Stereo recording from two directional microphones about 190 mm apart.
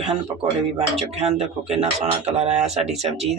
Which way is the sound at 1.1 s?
35° right (ahead or behind).